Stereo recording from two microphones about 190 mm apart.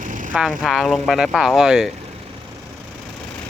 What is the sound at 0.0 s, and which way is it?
Vehicle, 45° right (ahead or behind).